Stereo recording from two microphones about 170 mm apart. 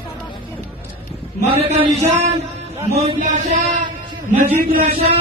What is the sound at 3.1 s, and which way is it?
Speech, 50° right (ahead or behind).